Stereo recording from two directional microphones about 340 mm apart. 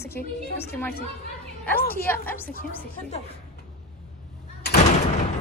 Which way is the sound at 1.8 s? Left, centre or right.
Left.